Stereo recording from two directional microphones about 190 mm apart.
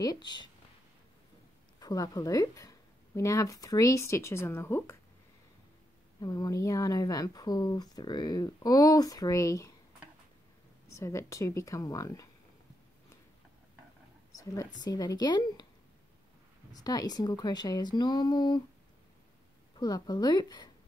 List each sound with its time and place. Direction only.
0.0 s speech: 20° left (ahead or behind)
1.8 s speech: 20° left (ahead or behind)
6.2 s speech: 20° left (ahead or behind)
11.0 s speech: 15° left (ahead or behind)
14.3 s speech: 20° left (ahead or behind)
16.7 s speech: 20° left (ahead or behind)
19.8 s speech: 20° left (ahead or behind)